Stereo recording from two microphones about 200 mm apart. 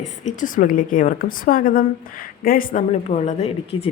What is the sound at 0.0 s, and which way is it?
A woman's voice, 40° left (ahead or behind).